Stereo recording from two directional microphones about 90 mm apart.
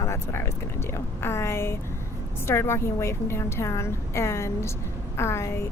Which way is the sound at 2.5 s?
30° left (ahead or behind).